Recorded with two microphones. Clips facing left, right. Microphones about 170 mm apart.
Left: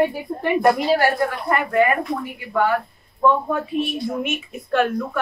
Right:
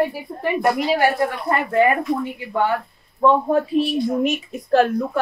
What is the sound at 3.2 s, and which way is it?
Speech, 35° right (ahead or behind).